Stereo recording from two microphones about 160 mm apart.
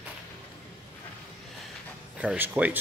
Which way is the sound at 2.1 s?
10° right (ahead or behind).